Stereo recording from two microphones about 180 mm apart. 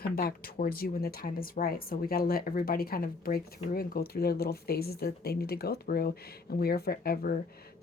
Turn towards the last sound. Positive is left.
turn(degrees=55)  # may be behind; listen again after turning